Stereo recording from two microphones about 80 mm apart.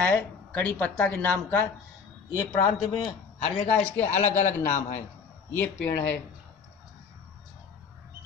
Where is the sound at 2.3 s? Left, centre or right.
Left.